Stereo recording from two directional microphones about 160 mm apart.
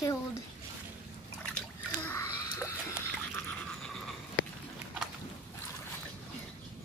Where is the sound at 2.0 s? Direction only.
20° left (ahead or behind).